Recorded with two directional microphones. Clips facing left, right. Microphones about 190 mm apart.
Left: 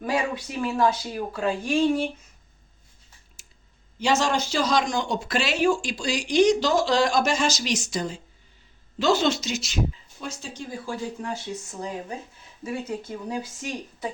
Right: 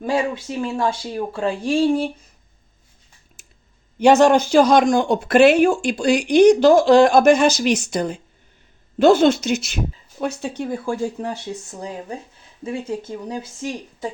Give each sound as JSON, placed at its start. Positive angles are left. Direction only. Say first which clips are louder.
{"t": 0.0, "sound": "speech", "louder": "right 5 dB", "side_deg": -25}
{"t": 3.4, "sound": "clicking", "louder": "right 4 dB", "side_deg": -55}
{"t": 4.0, "sound": "speech", "louder": "right 11 dB", "side_deg": -55}